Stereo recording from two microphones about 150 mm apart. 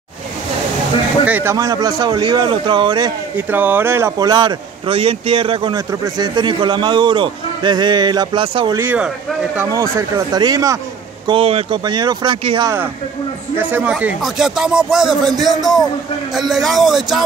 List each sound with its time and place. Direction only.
1.2 s speech: 15° right (ahead or behind); by 3.1 s 30° right (ahead or behind)
3.3 s speech: 10° right (ahead or behind); by 8.7 s 35° right (ahead or behind)
8.7 s speech: 10° right (ahead or behind)
11.2 s speech: 40° right (ahead or behind)
13.6 s speech: 10° right (ahead or behind)